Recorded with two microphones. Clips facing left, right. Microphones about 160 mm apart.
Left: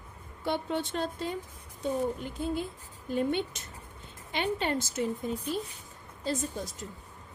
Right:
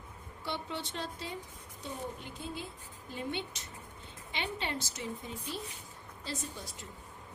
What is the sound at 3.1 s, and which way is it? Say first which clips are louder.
A woman's voice: left 9 dB; 50° left (ahead or behind).